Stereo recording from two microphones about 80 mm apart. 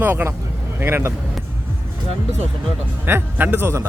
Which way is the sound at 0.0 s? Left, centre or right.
Right.